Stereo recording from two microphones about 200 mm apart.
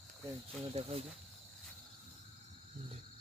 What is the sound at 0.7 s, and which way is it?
Speech, 30° right (ahead or behind).